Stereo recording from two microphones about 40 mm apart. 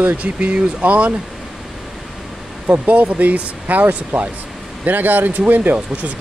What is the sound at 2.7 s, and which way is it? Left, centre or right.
Speech, right.